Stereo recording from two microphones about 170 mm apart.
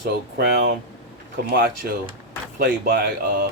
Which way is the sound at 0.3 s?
70° right (ahead or behind).